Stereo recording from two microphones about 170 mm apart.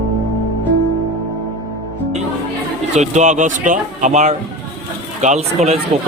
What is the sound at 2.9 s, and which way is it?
A man's voice, 45° right (ahead or behind).